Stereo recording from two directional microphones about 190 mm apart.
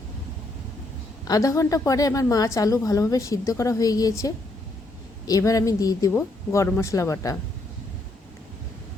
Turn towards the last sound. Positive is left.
turn(degrees=15)  # may be behind; listen again after turning